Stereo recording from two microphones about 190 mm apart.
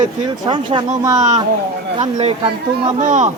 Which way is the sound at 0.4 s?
25° right (ahead or behind).